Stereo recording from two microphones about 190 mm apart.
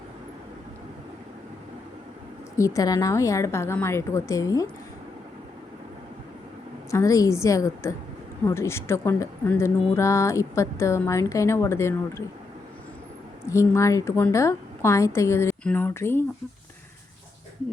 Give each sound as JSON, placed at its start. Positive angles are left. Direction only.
{"t": 2.6, "sound": "speech", "side_deg": 15}
{"t": 6.9, "sound": "speech", "side_deg": 15}
{"t": 13.5, "sound": "speech", "side_deg": 15}